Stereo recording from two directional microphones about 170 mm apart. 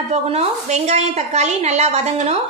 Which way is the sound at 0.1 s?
40° right (ahead or behind).